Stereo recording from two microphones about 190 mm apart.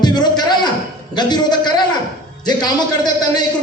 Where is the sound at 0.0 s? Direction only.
20° left (ahead or behind).